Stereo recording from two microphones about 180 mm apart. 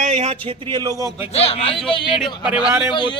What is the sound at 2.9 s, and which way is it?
Speech, 25° left (ahead or behind).